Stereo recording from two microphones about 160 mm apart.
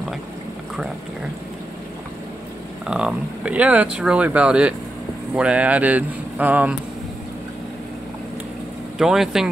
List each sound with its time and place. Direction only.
2.9 s speech: 5° right (ahead or behind)
8.9 s speech: 5° right (ahead or behind)